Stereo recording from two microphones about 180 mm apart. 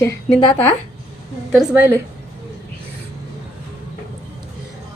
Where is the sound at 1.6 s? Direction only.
10° right (ahead or behind).